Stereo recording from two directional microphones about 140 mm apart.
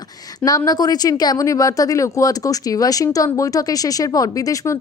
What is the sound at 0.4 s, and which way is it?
Speech, 25° left (ahead or behind).